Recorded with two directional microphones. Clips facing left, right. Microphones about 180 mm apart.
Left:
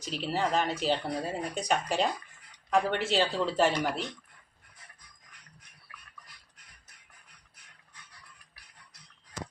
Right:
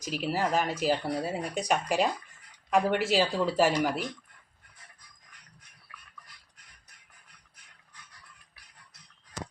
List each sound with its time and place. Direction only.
0.0 s speech: 10° right (ahead or behind)